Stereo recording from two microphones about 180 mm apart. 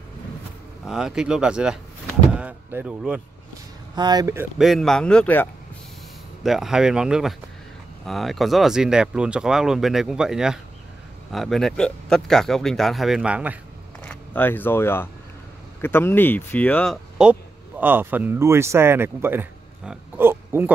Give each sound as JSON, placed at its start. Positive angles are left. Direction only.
{"t": 0.8, "sound": "speech", "side_deg": -5}
{"t": 3.9, "sound": "speech", "side_deg": -20}
{"t": 4.6, "sound": "speech", "side_deg": 0}
{"t": 6.4, "sound": "speech", "side_deg": 0}
{"t": 14.0, "sound": "speech", "side_deg": 10}
{"t": 19.9, "sound": "oink", "side_deg": -10}